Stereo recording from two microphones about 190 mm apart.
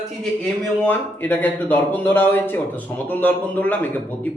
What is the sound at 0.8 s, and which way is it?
Speech, 10° left (ahead or behind).